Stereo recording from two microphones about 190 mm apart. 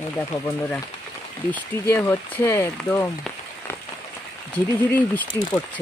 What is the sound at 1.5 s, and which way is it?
Speech, 10° left (ahead or behind).